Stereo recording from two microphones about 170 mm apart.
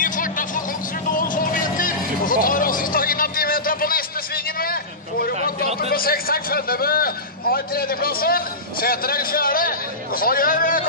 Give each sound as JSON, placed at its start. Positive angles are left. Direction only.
{"t": 0.0, "sound": "vehicle", "side_deg": 50}
{"t": 1.1, "sound": "music", "side_deg": 50}
{"t": 5.8, "sound": "a man's voice", "side_deg": 60}